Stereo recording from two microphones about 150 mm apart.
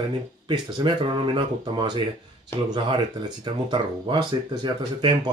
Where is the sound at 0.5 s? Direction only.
30° right (ahead or behind).